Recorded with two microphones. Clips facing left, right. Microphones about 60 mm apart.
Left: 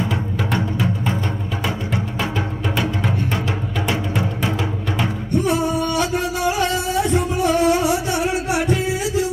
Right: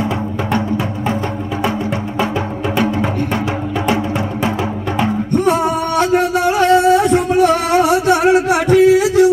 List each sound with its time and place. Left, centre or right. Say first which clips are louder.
5.3 s music: right 4 dB; right